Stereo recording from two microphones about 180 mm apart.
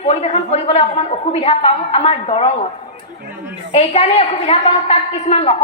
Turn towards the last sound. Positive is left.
turn(degrees=35)  # may be behind; listen again after turning